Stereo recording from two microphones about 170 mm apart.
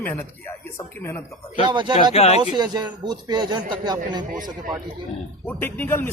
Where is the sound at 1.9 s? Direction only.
35° left (ahead or behind).